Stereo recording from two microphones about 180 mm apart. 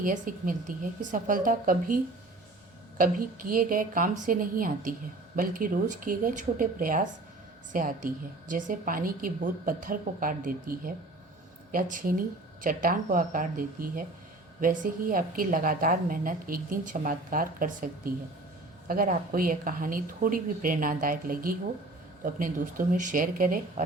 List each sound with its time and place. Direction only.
0.0 s a woman's voice: 50° right (ahead or behind)
3.0 s a woman's voice: 50° right (ahead or behind)